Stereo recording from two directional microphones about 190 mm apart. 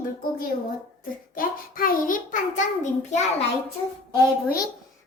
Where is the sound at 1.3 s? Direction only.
45° left (ahead or behind).